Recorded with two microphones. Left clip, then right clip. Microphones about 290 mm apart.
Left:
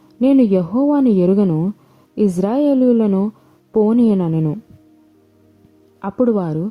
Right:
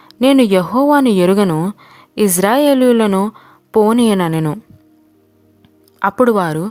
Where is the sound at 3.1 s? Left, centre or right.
Right.